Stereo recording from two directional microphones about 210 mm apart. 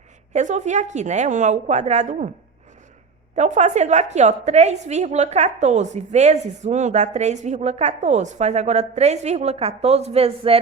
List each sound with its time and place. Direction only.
0.3 s a woman's voice: 35° right (ahead or behind)
3.3 s a woman's voice: 35° right (ahead or behind)